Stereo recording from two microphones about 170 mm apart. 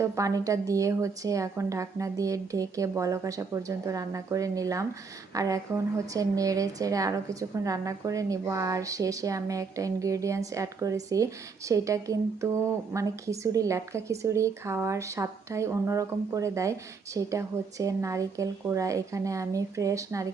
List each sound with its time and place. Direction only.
0.0 s a woman's voice: 20° right (ahead or behind)